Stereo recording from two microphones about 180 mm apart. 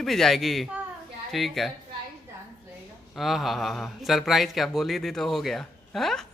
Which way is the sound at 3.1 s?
Centre (ahead or behind).